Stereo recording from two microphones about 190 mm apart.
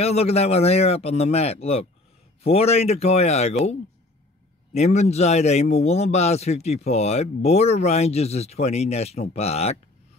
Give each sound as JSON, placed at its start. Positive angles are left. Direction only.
{"t": 0.0, "sound": "a man's voice", "side_deg": 35}
{"t": 4.7, "sound": "a man's voice", "side_deg": 35}